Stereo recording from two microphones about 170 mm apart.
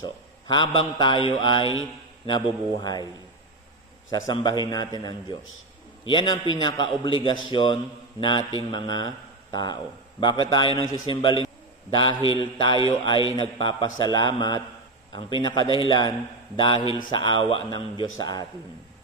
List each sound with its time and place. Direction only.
0.0 s a man's voice: 30° left (ahead or behind)
4.1 s a man's voice: 25° left (ahead or behind)